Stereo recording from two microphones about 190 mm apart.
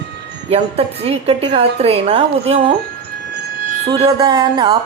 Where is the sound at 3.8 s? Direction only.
25° right (ahead or behind).